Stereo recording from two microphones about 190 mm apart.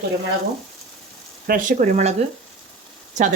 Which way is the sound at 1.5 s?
45° right (ahead or behind).